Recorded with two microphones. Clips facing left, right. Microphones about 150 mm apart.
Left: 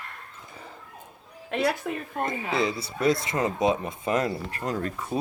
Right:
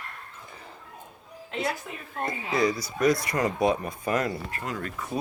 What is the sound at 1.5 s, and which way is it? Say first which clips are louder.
Speech: left 5 dB; 55° left (ahead or behind).